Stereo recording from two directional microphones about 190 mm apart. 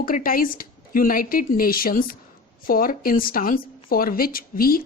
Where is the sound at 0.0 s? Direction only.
50° left (ahead or behind).